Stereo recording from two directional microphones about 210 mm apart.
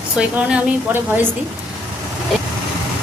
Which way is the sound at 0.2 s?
5° right (ahead or behind).